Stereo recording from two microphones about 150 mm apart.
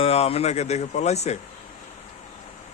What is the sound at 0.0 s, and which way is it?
Speech, 40° left (ahead or behind).